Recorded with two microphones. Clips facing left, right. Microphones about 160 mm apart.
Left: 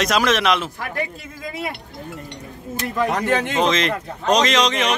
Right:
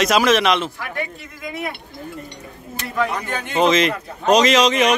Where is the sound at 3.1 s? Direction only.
90° left.